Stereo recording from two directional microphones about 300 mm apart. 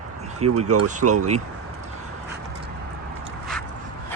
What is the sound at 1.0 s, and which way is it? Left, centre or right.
Speech, right.